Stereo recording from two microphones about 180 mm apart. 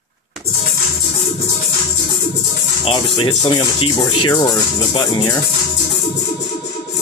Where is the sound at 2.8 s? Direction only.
25° left (ahead or behind).